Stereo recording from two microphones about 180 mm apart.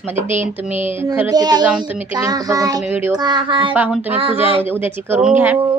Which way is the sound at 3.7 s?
10° right (ahead or behind).